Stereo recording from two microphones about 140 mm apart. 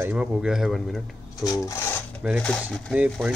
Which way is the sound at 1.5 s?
20° left (ahead or behind).